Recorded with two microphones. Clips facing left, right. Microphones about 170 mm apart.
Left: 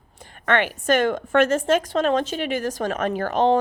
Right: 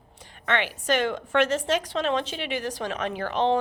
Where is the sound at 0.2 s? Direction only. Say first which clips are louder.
Left 5 dB; 50° left (ahead or behind).